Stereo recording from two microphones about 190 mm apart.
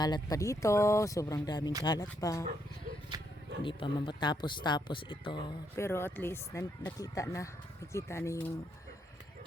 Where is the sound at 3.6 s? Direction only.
25° left (ahead or behind).